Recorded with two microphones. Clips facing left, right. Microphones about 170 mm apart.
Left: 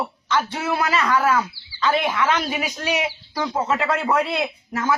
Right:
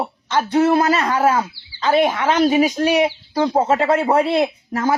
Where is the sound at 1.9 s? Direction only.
45° right (ahead or behind).